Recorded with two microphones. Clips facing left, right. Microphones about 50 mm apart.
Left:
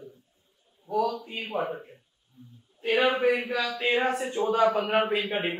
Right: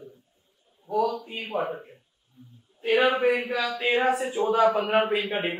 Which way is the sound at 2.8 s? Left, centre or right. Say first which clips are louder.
Right 2 dB; centre.